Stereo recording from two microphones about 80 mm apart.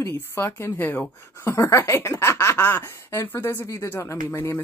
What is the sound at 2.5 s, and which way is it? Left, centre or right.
Speech, left.